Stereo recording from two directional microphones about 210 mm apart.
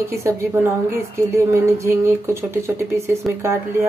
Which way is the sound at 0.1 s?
15° right (ahead or behind).